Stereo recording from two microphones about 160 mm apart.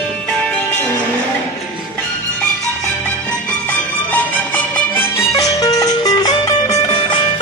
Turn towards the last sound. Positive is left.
turn(degrees=30)  # may be behind; listen again after turning